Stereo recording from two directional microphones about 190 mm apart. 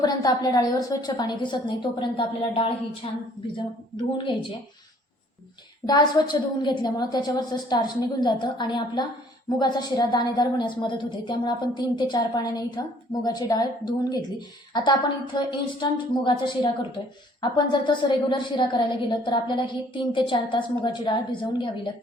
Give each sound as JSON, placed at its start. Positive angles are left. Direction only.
{"t": 0.0, "sound": "a woman's voice", "side_deg": 20}
{"t": 5.8, "sound": "a woman's voice", "side_deg": 20}